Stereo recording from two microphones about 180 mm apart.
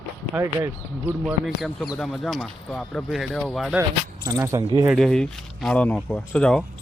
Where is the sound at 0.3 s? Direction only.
15° right (ahead or behind).